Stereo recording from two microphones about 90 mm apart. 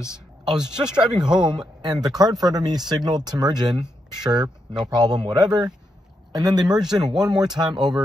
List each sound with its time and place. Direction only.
0.8 s speech: 10° right (ahead or behind)
1.2 s speech: 55° right (ahead or behind)